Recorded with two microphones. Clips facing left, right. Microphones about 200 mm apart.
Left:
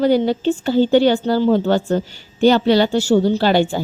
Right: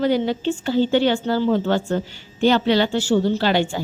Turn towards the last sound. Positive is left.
turn(degrees=35)  # may be behind; listen again after turning